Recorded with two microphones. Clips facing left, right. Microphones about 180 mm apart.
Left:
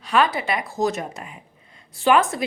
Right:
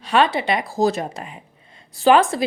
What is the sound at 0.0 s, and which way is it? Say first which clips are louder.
A woman's voice: right 2 dB; 25° right (ahead or behind).